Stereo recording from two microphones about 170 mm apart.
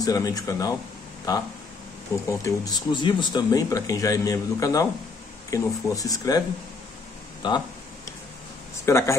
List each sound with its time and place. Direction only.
0.0 s speech: 20° left (ahead or behind)
7.4 s speech: 25° left (ahead or behind)
8.8 s speech: 15° left (ahead or behind)